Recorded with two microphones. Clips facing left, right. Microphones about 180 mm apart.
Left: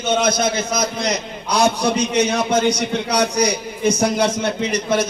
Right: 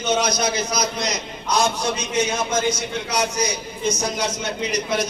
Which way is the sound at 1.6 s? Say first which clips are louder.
Left 6 dB; 65° left (ahead or behind).